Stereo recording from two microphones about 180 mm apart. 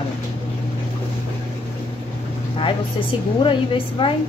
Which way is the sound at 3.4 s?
30° left (ahead or behind).